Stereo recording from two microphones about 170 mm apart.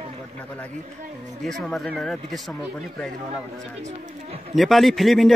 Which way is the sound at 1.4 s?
Centre (ahead or behind).